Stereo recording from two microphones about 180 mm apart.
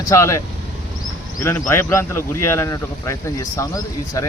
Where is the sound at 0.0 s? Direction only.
15° left (ahead or behind).